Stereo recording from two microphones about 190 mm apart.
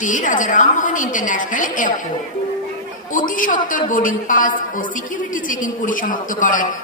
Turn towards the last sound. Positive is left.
turn(degrees=45)  # may be behind; listen again after turning